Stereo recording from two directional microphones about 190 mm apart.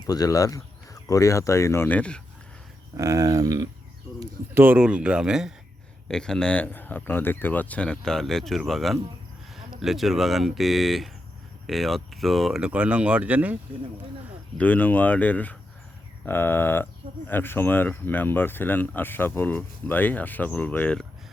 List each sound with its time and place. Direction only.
0.1 s speech: 20° left (ahead or behind)
3.0 s speech: 15° right (ahead or behind)
14.6 s speech: 10° left (ahead or behind)